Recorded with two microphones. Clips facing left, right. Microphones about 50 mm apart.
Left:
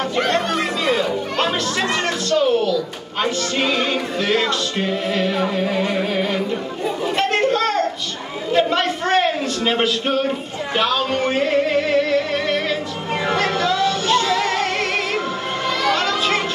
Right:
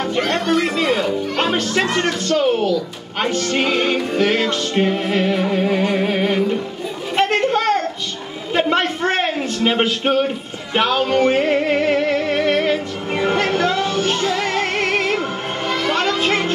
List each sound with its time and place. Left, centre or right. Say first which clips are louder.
0.7 s music: right 1 dB; right
7.2 s a sound: right 3 dB; right
8.5 s a man's voice: right 1 dB; right
10.7 s music: right 3 dB; right
15.7 s children playing: right 1 dB; right